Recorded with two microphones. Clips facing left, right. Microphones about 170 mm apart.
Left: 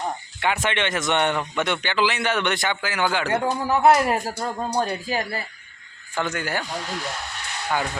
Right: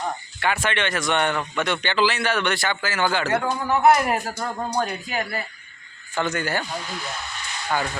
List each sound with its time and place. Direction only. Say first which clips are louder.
0.4 s speech: even; 20° left (ahead or behind)
3.4 s speech: left 1 dB; 30° left (ahead or behind)
6.1 s a man's voice: right 1 dB; 10° left (ahead or behind)
6.8 s a sound: left 2 dB; 80° left; by 7.7 s 65° left (ahead or behind)